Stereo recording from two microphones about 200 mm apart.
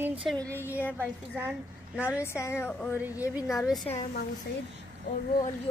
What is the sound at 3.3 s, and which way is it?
Speech, centre (ahead or behind).